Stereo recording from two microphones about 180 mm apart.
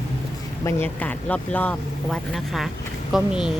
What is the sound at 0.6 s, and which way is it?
Speech, 15° left (ahead or behind).